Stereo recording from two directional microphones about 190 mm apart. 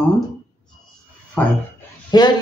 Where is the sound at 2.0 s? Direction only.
20° left (ahead or behind).